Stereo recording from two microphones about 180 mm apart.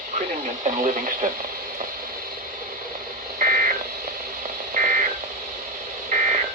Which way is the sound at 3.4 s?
45° right (ahead or behind).